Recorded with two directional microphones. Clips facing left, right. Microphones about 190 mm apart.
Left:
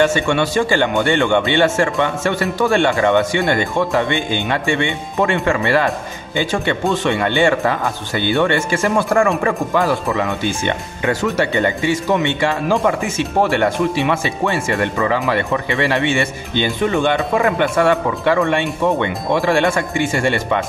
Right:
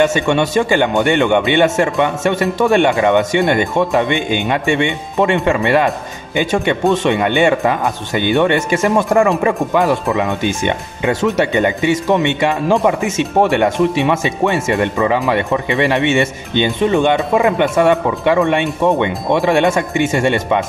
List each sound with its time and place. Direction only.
0.0 s speech: 20° right (ahead or behind)